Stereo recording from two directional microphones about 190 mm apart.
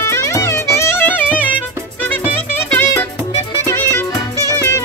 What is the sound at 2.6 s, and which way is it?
Music, 10° left (ahead or behind).